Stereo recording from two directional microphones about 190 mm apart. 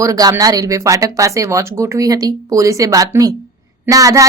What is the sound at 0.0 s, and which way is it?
Speech, 20° right (ahead or behind).